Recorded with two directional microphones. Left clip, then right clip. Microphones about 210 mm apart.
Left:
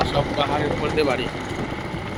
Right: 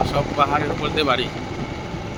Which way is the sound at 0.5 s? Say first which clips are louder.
Right 1 dB; 30° right (ahead or behind).